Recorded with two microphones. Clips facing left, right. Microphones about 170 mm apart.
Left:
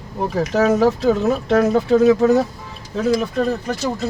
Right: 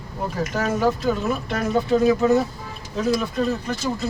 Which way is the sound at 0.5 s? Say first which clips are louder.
Left 7 dB; 70° left (ahead or behind).